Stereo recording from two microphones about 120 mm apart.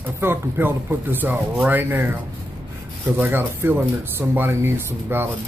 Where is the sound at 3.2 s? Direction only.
15° right (ahead or behind).